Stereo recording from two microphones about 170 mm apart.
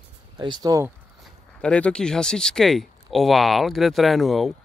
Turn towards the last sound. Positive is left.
turn(degrees=0)  # may be behind; listen again after turning